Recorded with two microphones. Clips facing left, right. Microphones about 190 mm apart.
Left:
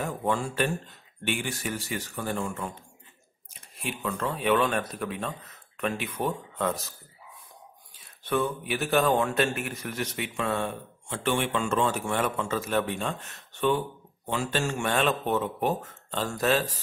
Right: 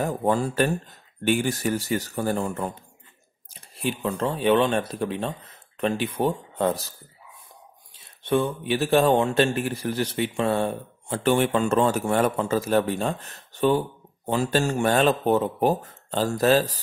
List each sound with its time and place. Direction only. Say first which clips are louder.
0.0 s a man's voice: right 5 dB; 40° right (ahead or behind)
3.7 s a man's voice: right 6 dB; 35° right (ahead or behind)
8.2 s a man's voice: right 4 dB; 25° right (ahead or behind)